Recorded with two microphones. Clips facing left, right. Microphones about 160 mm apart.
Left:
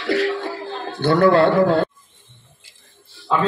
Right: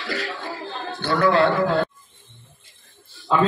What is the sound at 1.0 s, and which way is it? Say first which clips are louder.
Speech: left 4 dB; 50° left (ahead or behind).